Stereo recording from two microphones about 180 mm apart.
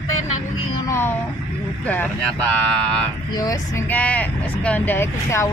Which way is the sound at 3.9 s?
10° left (ahead or behind).